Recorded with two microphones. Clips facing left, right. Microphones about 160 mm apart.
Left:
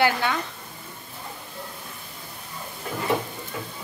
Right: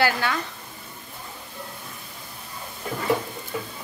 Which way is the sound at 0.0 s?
20° left (ahead or behind).